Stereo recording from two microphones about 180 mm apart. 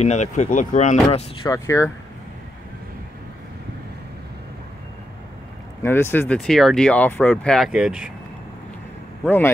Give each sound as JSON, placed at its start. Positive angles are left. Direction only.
{"t": 0.0, "sound": "speech", "side_deg": 40}
{"t": 1.4, "sound": "speech", "side_deg": 15}
{"t": 5.8, "sound": "speech", "side_deg": 15}
{"t": 9.2, "sound": "speech", "side_deg": 10}